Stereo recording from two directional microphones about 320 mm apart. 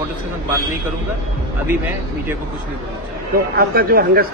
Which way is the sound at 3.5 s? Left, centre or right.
Right.